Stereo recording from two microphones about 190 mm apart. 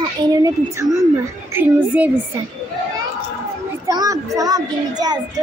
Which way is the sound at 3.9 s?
15° right (ahead or behind).